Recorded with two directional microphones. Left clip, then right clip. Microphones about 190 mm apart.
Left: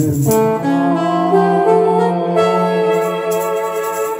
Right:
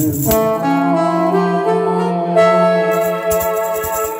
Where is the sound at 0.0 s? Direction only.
50° right (ahead or behind).